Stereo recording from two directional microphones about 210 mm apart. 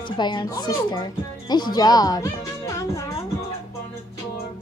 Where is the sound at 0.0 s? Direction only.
20° left (ahead or behind).